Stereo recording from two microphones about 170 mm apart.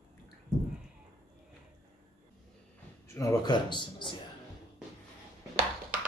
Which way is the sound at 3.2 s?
20° left (ahead or behind).